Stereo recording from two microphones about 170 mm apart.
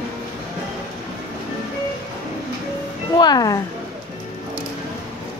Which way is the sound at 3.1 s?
25° left (ahead or behind).